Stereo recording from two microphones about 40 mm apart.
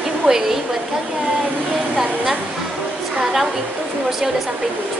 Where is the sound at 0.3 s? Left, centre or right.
Centre.